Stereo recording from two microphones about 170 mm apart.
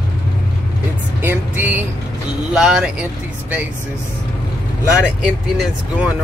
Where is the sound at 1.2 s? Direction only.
10° right (ahead or behind).